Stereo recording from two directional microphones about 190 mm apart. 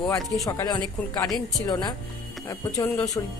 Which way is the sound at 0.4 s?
20° left (ahead or behind).